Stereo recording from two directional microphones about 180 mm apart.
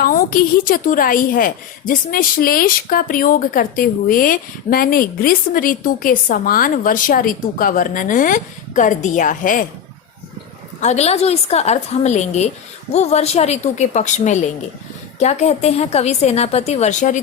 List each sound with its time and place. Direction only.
0.0 s speech: 50° left (ahead or behind)
10.8 s a woman's voice: 40° left (ahead or behind)